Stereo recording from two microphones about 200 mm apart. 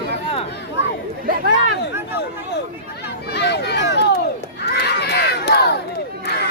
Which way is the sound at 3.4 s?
55° left (ahead or behind).